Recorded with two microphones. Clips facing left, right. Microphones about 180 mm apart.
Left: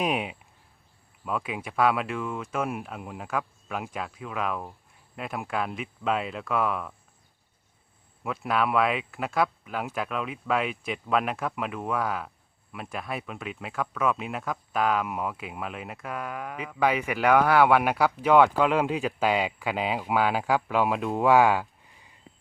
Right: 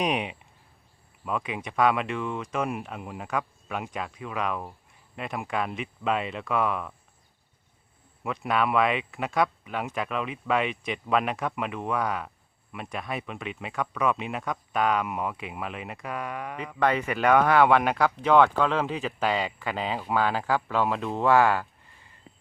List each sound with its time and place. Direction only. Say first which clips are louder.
0.0 s speech: even; centre (ahead or behind)
8.2 s speech: even; centre (ahead or behind)